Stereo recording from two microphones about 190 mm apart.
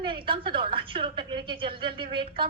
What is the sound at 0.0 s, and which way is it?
A woman's voice, 25° right (ahead or behind).